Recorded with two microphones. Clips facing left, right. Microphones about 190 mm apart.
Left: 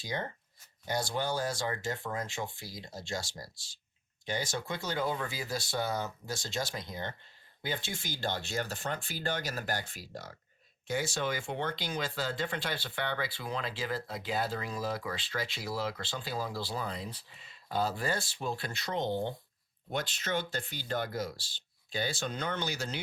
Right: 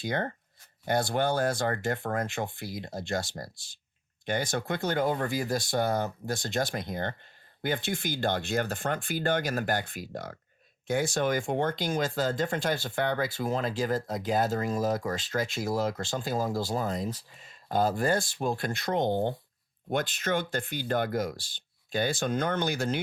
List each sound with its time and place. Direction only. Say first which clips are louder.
0.0 s speech: right 6 dB; 60° right (ahead or behind)